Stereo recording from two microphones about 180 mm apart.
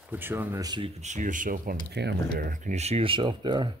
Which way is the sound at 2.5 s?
40° right (ahead or behind).